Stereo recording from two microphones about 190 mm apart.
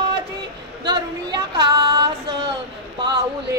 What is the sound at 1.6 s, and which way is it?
Child singing, 25° right (ahead or behind).